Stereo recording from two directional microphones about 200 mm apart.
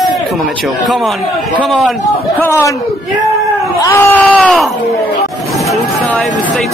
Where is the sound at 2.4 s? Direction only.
15° left (ahead or behind).